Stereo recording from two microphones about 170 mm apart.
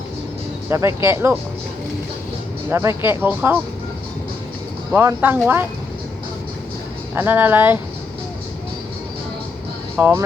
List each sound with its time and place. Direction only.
0.7 s speech: 15° right (ahead or behind)
2.6 s speech: 15° right (ahead or behind)
4.9 s speech: 10° right (ahead or behind)
7.2 s speech: 10° right (ahead or behind)
10.0 s speech: 10° right (ahead or behind)